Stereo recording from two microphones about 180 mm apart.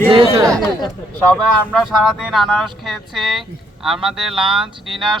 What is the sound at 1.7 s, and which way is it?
Speech, centre (ahead or behind).